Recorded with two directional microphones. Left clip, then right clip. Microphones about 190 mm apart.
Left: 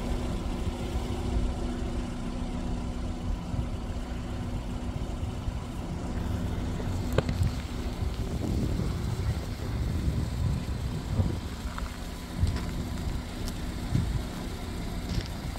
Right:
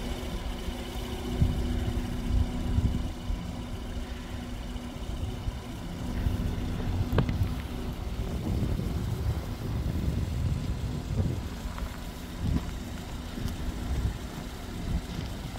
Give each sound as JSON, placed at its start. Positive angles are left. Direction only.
{"t": 7.2, "sound": "boat", "side_deg": 40}